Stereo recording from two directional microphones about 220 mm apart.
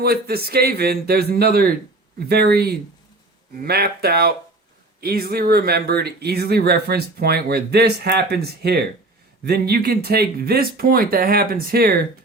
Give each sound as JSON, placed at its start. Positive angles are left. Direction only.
{"t": 0.0, "sound": "speech", "side_deg": -45}